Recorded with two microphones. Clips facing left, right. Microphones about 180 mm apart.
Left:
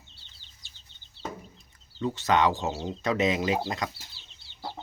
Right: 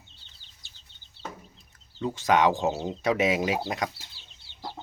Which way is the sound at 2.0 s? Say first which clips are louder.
Right 1 dB; 10° right (ahead or behind).